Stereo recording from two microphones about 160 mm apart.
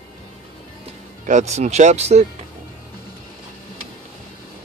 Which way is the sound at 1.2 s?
45° right (ahead or behind).